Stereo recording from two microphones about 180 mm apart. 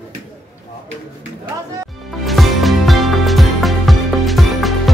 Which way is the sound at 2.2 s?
Centre (ahead or behind).